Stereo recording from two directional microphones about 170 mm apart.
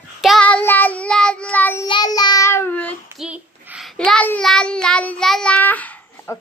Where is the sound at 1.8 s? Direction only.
25° left (ahead or behind); by 2.9 s 10° left (ahead or behind).